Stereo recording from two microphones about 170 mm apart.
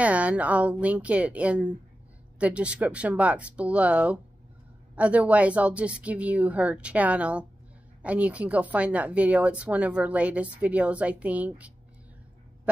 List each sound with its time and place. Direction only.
0.0 s speech: 5° right (ahead or behind)